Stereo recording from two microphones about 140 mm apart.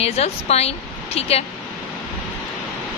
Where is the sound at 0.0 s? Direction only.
50° left (ahead or behind).